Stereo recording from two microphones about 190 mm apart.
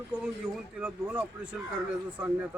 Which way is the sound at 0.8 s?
5° right (ahead or behind).